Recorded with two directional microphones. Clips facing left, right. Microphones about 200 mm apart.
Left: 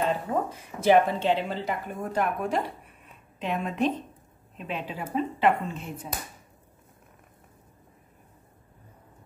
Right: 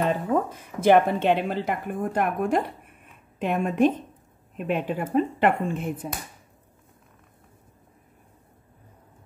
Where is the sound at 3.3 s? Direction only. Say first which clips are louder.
Right 5 dB; 50° right (ahead or behind).